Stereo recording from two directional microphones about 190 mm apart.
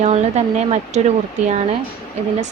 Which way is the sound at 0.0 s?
35° right (ahead or behind).